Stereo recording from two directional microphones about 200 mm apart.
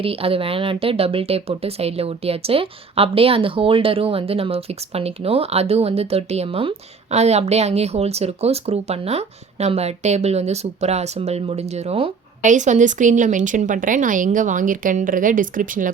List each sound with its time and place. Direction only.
0.0 s speech: 30° right (ahead or behind)